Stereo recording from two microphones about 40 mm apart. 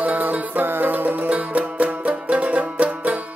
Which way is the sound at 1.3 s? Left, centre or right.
Right.